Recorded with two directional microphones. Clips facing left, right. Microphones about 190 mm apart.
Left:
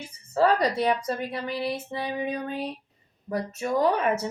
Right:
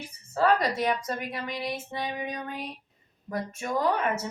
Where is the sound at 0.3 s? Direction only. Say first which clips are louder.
Left 2 dB; 30° left (ahead or behind).